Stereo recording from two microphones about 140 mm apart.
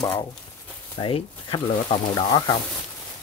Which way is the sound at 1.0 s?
40° left (ahead or behind).